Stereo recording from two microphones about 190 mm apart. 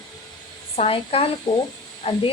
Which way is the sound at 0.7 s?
30° left (ahead or behind).